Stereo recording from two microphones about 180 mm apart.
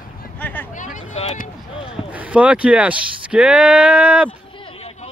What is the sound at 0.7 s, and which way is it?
Vehicle, 40° left (ahead or behind).